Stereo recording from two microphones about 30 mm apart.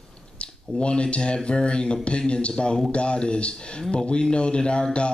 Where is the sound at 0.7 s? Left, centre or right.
Left.